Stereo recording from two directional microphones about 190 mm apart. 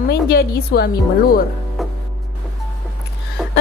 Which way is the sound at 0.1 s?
55° left (ahead or behind).